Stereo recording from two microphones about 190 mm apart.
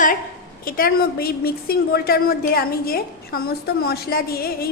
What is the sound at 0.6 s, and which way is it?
A woman's voice, 50° left (ahead or behind).